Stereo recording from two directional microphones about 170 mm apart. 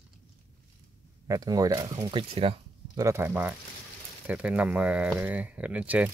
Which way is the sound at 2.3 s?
35° right (ahead or behind).